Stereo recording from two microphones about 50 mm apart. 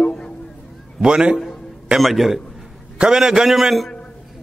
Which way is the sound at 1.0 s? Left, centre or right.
Centre.